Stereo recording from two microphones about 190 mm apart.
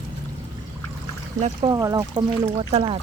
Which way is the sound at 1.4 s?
35° right (ahead or behind).